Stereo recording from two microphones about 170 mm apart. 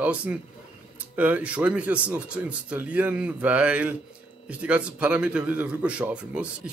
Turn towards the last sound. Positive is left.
turn(degrees=-5)  # may be behind; listen again after turning